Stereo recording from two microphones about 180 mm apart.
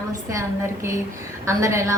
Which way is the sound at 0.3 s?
15° right (ahead or behind).